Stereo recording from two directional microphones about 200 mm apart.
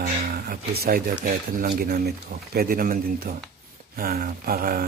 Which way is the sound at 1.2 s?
45° right (ahead or behind).